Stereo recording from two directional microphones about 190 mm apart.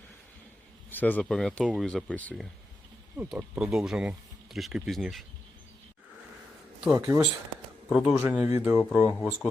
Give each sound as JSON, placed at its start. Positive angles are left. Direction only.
{"t": 0.9, "sound": "speech", "side_deg": 10}
{"t": 3.2, "sound": "speech", "side_deg": -10}
{"t": 6.9, "sound": "speech", "side_deg": -15}
{"t": 7.9, "sound": "speech", "side_deg": 0}